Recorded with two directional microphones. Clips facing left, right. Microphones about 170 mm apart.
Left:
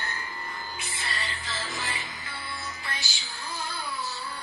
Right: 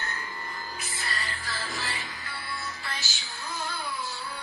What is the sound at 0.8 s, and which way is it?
Music, 30° left (ahead or behind).